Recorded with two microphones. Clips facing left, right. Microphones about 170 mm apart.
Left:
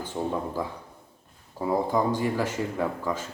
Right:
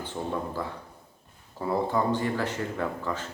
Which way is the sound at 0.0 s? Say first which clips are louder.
Left 2 dB; 10° left (ahead or behind).